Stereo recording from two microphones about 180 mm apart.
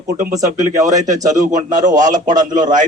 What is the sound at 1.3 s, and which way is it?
Speech, 45° right (ahead or behind).